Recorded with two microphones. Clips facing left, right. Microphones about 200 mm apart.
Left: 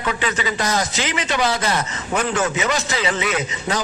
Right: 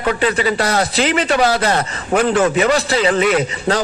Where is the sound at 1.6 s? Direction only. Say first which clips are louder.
Right 5 dB; 55° right (ahead or behind).